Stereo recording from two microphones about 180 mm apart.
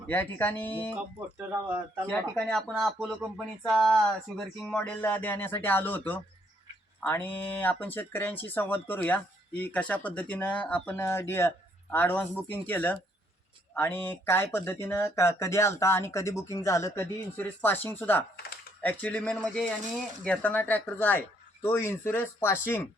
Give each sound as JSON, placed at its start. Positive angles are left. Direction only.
{"t": 0.1, "sound": "speech", "side_deg": 10}
{"t": 1.4, "sound": "speech", "side_deg": -10}
{"t": 2.0, "sound": "speech", "side_deg": 5}